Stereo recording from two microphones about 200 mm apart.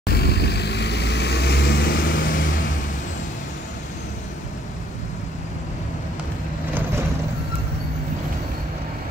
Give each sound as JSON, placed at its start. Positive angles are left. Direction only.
{"t": 0.0, "sound": "vehicle", "side_deg": 50}